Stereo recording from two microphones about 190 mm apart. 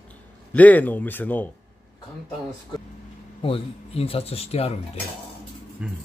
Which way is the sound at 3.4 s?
30° left (ahead or behind).